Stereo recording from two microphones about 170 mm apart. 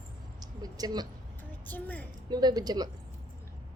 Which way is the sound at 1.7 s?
10° left (ahead or behind).